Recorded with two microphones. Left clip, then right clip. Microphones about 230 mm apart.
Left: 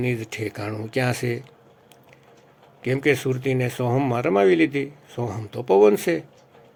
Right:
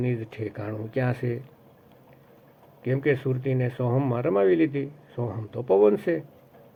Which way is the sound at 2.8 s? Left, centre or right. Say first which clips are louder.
Left 4 dB; left.